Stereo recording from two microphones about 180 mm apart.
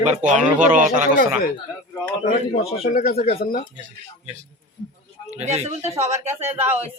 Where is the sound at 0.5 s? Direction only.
45° right (ahead or behind).